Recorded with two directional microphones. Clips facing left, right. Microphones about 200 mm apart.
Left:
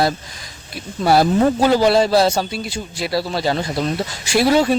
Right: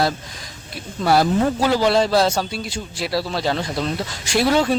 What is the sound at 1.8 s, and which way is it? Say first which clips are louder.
Speech: left 3 dB; 10° left (ahead or behind).